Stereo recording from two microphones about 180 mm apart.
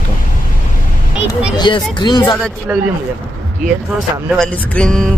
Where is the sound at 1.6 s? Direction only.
25° left (ahead or behind).